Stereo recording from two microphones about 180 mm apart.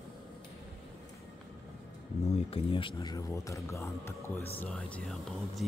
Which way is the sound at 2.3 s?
35° left (ahead or behind).